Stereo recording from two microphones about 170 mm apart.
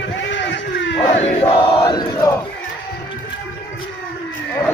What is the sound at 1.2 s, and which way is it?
Crowd, 30° left (ahead or behind).